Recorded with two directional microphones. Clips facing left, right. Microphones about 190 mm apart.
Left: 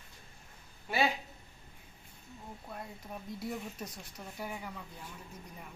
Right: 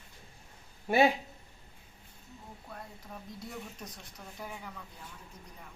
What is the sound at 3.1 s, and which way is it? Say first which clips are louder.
Speech: left 5 dB; 10° left (ahead or behind).